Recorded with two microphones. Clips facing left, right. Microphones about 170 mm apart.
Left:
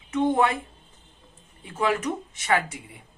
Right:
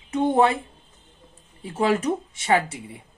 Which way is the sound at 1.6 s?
30° right (ahead or behind).